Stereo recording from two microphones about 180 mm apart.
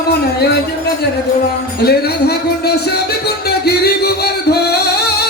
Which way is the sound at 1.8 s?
60° left (ahead or behind).